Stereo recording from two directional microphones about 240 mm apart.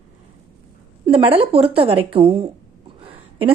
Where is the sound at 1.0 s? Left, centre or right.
Right.